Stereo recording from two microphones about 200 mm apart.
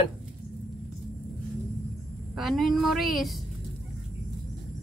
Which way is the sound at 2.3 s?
Centre (ahead or behind).